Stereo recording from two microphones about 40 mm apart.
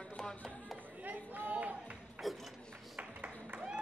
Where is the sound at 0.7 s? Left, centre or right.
Right.